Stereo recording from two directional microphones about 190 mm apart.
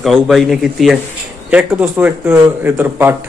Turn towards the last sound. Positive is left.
turn(degrees=-10)  # may be behind; listen again after turning